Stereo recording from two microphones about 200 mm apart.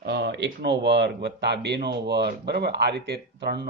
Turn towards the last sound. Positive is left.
turn(degrees=-55)  # may be behind; listen again after turning